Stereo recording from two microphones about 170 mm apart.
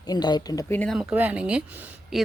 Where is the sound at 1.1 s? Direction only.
10° right (ahead or behind).